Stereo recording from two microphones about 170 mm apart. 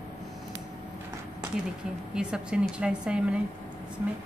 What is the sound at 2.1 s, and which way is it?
A woman's voice, 5° right (ahead or behind).